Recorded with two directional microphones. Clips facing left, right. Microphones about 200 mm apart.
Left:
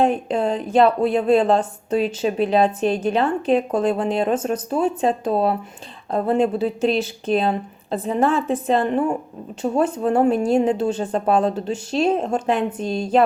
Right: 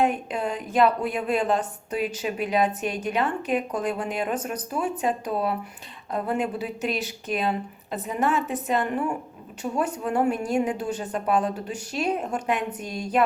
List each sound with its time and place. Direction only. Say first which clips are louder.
0.0 s a woman's voice: left 5 dB; 30° left (ahead or behind)